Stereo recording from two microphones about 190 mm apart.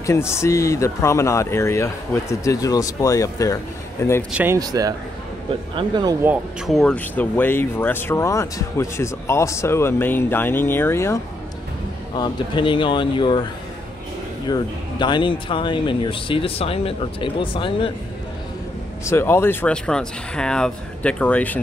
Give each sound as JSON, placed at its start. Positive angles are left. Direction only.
{"t": 0.0, "sound": "speech", "side_deg": 15}
{"t": 4.3, "sound": "speech", "side_deg": -10}
{"t": 4.6, "sound": "speech", "side_deg": -20}
{"t": 6.2, "sound": "speech", "side_deg": -5}
{"t": 12.2, "sound": "speech", "side_deg": 25}
{"t": 14.5, "sound": "speech", "side_deg": 25}
{"t": 19.0, "sound": "speech", "side_deg": 15}